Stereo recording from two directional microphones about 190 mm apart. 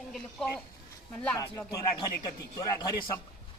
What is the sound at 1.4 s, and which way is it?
Speech, 20° left (ahead or behind).